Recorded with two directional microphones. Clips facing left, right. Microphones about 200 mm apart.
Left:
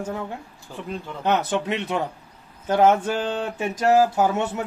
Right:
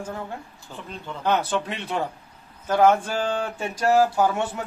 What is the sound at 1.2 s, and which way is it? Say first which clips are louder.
A man's voice: left 1 dB; 20° left (ahead or behind).